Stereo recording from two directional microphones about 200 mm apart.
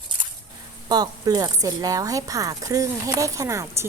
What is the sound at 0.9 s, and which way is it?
Speech, 20° right (ahead or behind).